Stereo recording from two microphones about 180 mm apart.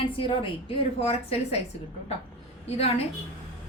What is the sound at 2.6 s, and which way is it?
Speech, 35° left (ahead or behind).